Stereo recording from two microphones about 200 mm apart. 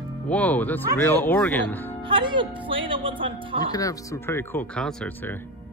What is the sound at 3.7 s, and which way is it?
Speech, 15° left (ahead or behind).